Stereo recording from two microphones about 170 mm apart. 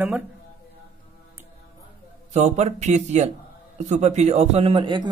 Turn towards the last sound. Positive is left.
turn(degrees=-30)  # may be behind; listen again after turning